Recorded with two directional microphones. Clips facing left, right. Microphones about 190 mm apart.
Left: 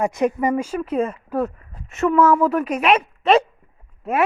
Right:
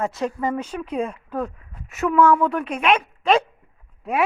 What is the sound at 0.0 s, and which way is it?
Speech, 15° left (ahead or behind).